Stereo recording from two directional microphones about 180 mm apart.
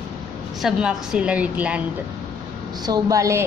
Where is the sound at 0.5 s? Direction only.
Centre (ahead or behind).